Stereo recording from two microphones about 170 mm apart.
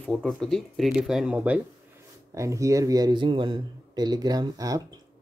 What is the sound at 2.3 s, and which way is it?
Speech, 20° right (ahead or behind).